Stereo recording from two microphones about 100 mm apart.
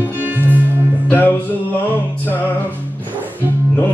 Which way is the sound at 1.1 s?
20° left (ahead or behind).